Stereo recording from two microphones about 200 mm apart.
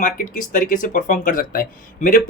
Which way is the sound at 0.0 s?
40° left (ahead or behind).